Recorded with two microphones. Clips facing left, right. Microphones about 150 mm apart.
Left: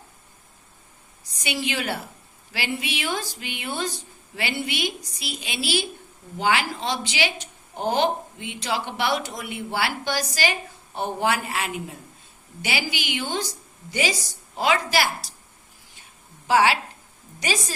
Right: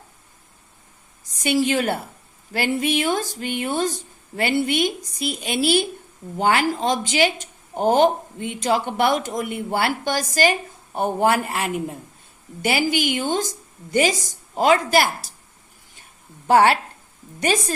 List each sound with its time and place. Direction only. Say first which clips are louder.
1.4 s speech: right 8 dB; 40° right (ahead or behind)
16.5 s speech: right 4 dB; 50° right (ahead or behind)